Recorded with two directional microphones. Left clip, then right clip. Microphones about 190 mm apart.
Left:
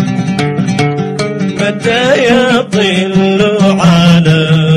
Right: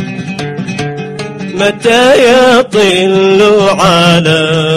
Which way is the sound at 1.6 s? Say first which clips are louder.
Right 5 dB; 40° right (ahead or behind).